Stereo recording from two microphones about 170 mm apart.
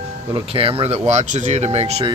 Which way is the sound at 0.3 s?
30° right (ahead or behind).